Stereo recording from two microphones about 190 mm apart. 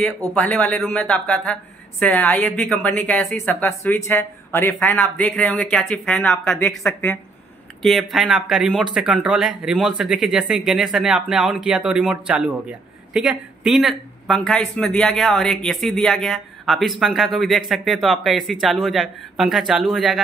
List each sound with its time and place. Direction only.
0.3 s speech: 5° left (ahead or behind)